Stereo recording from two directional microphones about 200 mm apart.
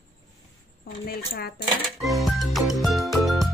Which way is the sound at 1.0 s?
50° left (ahead or behind).